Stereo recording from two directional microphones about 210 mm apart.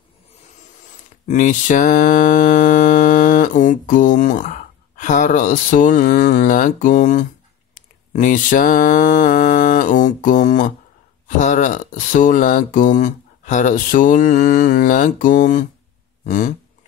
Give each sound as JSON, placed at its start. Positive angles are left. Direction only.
{"t": 1.2, "sound": "mantra", "side_deg": 35}
{"t": 11.2, "sound": "speech", "side_deg": 35}